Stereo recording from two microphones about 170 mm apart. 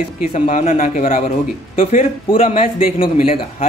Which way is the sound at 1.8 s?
35° left (ahead or behind).